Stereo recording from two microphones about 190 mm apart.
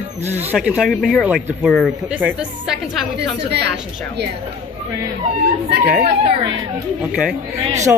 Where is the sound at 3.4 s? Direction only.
60° right (ahead or behind).